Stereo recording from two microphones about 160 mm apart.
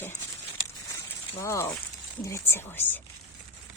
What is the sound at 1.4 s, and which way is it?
Speech, 15° left (ahead or behind).